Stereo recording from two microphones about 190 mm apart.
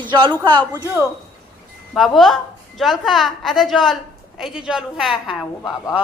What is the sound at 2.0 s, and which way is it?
A woman's voice, centre (ahead or behind).